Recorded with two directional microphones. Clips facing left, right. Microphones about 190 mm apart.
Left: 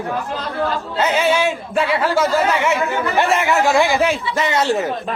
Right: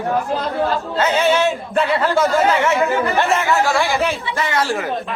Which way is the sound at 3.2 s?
15° left (ahead or behind).